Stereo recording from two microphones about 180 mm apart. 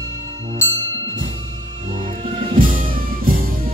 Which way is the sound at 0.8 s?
90° right.